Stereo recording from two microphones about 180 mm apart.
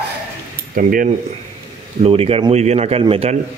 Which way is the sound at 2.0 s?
30° right (ahead or behind).